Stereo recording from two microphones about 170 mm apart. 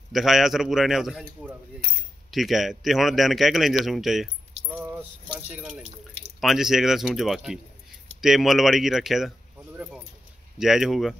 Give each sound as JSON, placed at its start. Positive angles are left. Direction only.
{"t": 0.1, "sound": "a man's voice", "side_deg": 0}
{"t": 4.6, "sound": "keys jangling", "side_deg": -10}
{"t": 5.5, "sound": "a man's voice", "side_deg": -5}
{"t": 9.8, "sound": "keys jangling", "side_deg": -5}
{"t": 10.6, "sound": "a man's voice", "side_deg": 0}